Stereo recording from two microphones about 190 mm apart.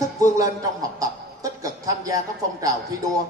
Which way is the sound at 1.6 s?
20° right (ahead or behind).